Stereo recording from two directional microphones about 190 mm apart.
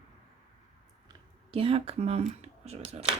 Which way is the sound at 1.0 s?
30° right (ahead or behind).